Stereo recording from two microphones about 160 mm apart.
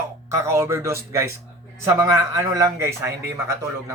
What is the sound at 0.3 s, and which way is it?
A man's voice, 15° right (ahead or behind).